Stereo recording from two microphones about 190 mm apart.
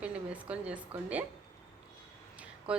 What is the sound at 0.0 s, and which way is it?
A woman's voice, 5° right (ahead or behind).